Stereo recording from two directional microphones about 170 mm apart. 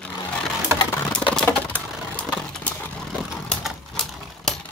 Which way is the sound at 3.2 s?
Centre (ahead or behind).